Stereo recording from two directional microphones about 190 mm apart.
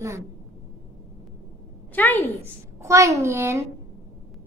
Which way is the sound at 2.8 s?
15° right (ahead or behind).